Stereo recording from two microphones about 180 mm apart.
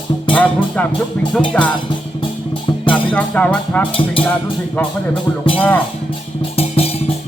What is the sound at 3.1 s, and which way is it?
Speech, 5° left (ahead or behind).